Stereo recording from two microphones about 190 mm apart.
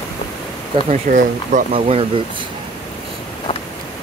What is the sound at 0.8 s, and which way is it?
Speech, 40° right (ahead or behind).